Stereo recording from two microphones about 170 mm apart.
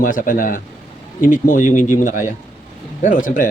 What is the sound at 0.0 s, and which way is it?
A man's voice, 55° left (ahead or behind).